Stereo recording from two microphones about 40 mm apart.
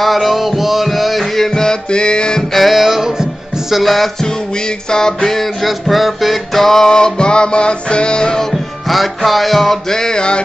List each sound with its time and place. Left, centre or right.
0.0 s music: centre; by 2.4 s left
2.5 s music: centre
4.8 s music: centre